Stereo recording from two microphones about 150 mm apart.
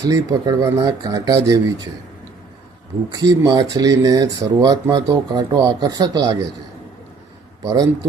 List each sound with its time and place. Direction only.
0.0 s speech: 25° right (ahead or behind)
3.1 s speech: 25° right (ahead or behind)
7.6 s speech: 25° right (ahead or behind)